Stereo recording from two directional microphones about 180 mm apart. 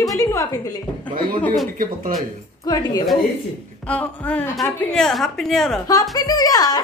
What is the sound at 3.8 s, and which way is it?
A woman's voice, 5° left (ahead or behind).